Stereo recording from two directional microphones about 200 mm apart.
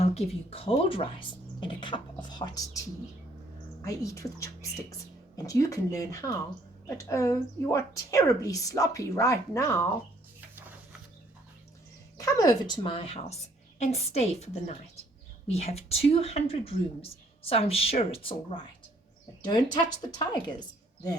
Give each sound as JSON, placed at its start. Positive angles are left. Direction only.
{"t": 0.0, "sound": "a woman's voice", "side_deg": 30}
{"t": 12.1, "sound": "a woman's voice", "side_deg": 15}